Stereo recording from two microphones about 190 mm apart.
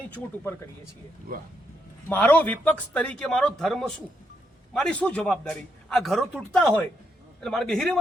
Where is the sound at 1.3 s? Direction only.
50° right (ahead or behind).